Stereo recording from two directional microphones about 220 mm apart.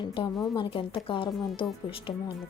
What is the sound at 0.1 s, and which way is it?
Speech, 20° left (ahead or behind).